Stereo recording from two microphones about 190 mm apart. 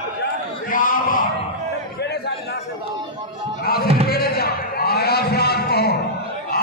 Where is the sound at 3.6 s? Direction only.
55° left (ahead or behind).